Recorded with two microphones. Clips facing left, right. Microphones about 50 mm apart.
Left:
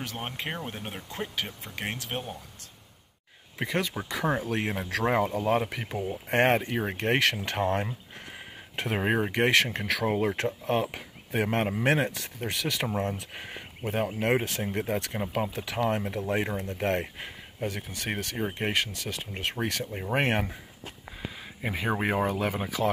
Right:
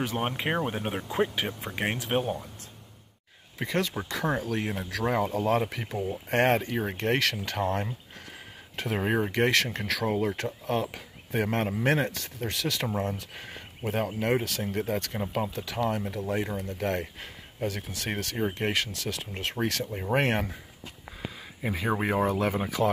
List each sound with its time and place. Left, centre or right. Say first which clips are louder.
0.0 s speech: right 6 dB; centre
3.6 s speech: right 1 dB; centre
4.5 s speech: left 1 dB; left
5.2 s speech: even; centre
13.8 s speech: even; centre
14.2 s speech: left 1 dB; left
17.6 s speech: right 1 dB; centre
21.5 s speech: right 1 dB; centre
22.3 s speech: right 2 dB; centre